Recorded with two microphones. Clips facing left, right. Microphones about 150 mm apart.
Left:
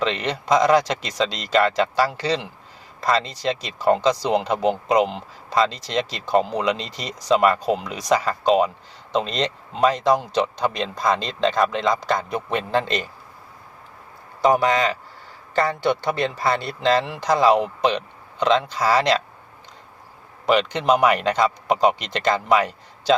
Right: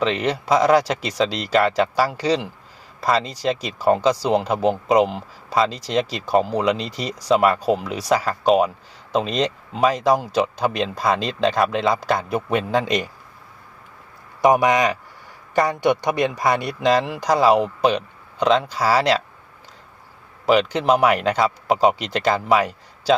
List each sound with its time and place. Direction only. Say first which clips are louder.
0.0 s speech: right 3 dB; 10° right (ahead or behind)
14.4 s speech: right 2 dB; 20° right (ahead or behind)
20.5 s speech: right 2 dB; 5° right (ahead or behind)